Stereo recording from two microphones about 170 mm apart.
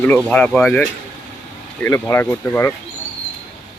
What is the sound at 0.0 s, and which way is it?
Speech, 5° left (ahead or behind).